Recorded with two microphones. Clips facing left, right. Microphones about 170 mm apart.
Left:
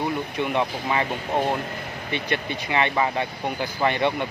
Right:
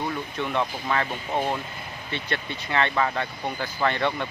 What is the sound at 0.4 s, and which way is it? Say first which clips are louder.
Speech: left 2 dB; 15° left (ahead or behind).